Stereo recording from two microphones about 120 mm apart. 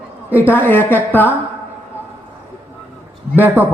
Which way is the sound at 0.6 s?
15° left (ahead or behind).